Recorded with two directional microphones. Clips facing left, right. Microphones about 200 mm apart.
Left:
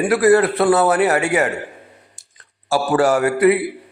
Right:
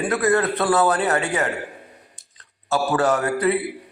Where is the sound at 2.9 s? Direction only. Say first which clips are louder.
Left 5 dB; 30° left (ahead or behind).